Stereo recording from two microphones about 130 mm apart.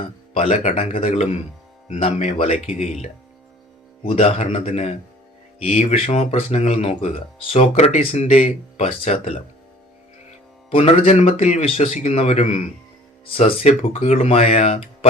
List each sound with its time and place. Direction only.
0.3 s speech: 65° left (ahead or behind)
4.1 s speech: 55° left (ahead or behind)
10.7 s speech: 50° left (ahead or behind)